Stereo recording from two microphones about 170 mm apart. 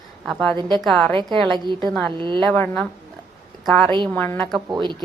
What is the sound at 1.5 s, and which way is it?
Speech, 25° right (ahead or behind).